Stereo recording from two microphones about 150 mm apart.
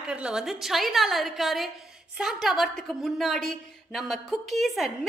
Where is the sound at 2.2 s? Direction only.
Centre (ahead or behind).